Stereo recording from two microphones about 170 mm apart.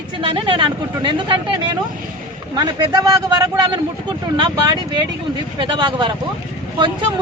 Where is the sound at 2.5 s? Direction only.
25° right (ahead or behind).